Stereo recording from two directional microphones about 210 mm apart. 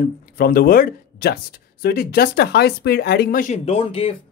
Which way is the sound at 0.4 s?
45° left (ahead or behind).